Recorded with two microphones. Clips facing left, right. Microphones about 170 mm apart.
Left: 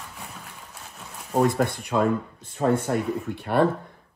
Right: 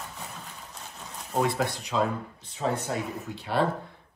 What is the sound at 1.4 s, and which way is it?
Speech, 50° left (ahead or behind).